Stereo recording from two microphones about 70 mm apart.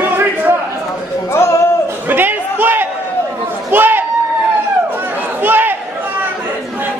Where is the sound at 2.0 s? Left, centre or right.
Right.